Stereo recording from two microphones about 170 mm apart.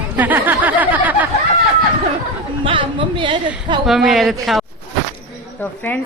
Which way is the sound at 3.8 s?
Centre (ahead or behind).